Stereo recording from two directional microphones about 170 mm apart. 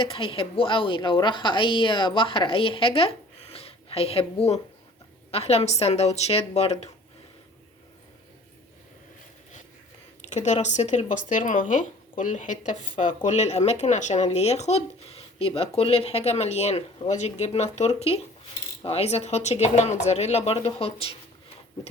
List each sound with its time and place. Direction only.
0.0 s speech: 30° left (ahead or behind)
10.2 s speech: 45° left (ahead or behind)